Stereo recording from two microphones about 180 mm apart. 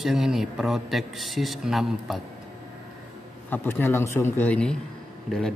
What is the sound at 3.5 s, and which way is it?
A man's voice, 10° left (ahead or behind).